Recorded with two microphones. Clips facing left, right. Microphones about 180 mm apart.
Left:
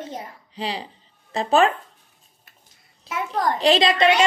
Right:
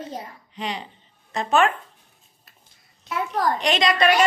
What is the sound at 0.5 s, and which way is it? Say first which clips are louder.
A woman's voice: left 2 dB; 30° left (ahead or behind).